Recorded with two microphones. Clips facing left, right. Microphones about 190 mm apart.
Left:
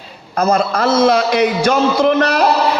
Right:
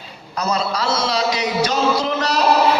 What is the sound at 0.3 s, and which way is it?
A man's voice, 50° left (ahead or behind).